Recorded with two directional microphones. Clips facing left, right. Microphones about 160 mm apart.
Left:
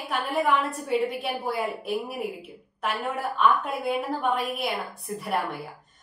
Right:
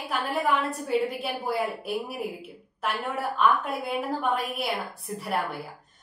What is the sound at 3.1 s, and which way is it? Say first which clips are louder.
A woman's voice: even; centre (ahead or behind).